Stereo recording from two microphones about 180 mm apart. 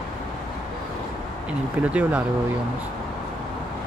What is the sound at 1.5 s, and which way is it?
Speech, 5° right (ahead or behind).